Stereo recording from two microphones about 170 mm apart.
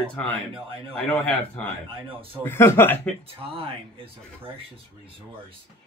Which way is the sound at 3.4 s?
30° right (ahead or behind).